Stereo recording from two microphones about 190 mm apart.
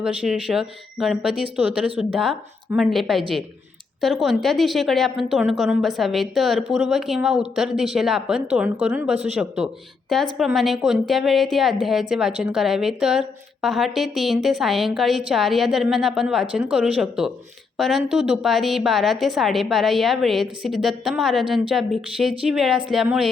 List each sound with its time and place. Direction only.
0.0 s a woman's voice: 5° right (ahead or behind)
10.3 s a woman's voice: centre (ahead or behind)